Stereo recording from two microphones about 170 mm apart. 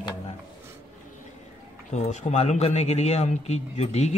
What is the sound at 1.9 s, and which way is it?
A man's voice, 45° left (ahead or behind).